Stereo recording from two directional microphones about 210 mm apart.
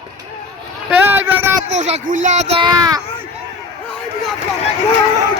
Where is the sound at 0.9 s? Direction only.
10° right (ahead or behind).